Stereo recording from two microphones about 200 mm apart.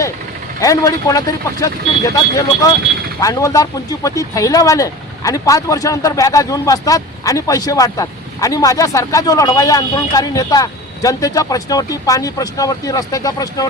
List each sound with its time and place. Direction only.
0.6 s speech: 15° left (ahead or behind)